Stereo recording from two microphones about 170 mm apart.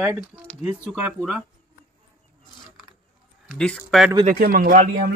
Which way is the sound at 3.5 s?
5° left (ahead or behind).